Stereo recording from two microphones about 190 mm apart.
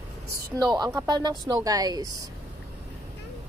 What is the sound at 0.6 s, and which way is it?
Speech, 20° right (ahead or behind).